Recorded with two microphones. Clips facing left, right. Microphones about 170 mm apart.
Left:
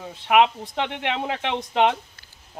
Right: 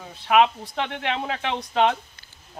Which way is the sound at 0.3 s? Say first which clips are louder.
Even; 15° left (ahead or behind).